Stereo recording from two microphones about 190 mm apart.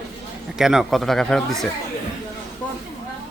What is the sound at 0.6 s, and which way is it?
Speech, centre (ahead or behind).